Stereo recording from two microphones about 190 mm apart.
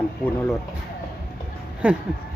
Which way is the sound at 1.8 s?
5° right (ahead or behind).